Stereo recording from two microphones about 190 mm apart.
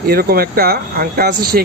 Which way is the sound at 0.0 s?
55° right (ahead or behind).